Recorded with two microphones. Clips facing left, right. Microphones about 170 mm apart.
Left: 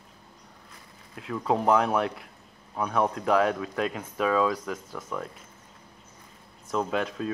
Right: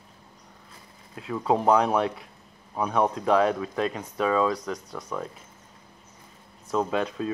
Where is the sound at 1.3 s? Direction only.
5° right (ahead or behind).